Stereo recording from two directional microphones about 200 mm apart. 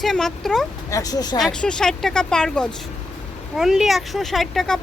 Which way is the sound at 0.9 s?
15° left (ahead or behind).